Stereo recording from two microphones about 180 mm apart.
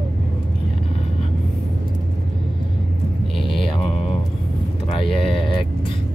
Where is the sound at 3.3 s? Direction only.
Centre (ahead or behind).